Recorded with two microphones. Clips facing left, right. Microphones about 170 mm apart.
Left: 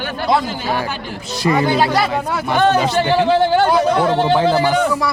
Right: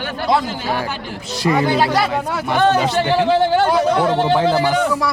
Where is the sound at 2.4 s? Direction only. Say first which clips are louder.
Left 1 dB; 35° left (ahead or behind).